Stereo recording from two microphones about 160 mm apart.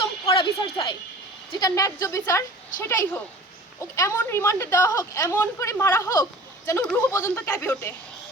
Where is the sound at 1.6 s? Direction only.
20° left (ahead or behind).